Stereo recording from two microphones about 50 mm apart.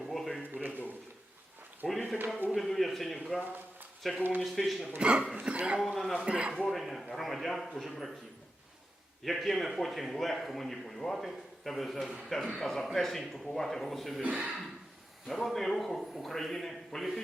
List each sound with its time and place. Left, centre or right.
0.1 s a sound: centre
0.5 s a sound: right
1.8 s a sound: centre
2.6 s a man's voice: centre
4.9 s speech: right
5.8 s a man's voice: centre
6.1 s speech: right
6.7 s a man's voice: centre
9.2 s a man's voice: centre
14.2 s speech: right
15.3 s a man's voice: centre